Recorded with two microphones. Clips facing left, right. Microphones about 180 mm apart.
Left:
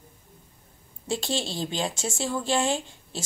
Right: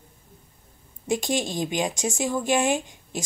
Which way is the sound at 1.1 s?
15° right (ahead or behind).